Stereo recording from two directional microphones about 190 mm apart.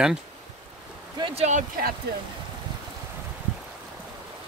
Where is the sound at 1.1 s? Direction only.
30° right (ahead or behind).